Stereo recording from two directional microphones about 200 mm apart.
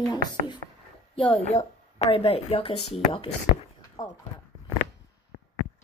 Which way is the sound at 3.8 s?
20° left (ahead or behind).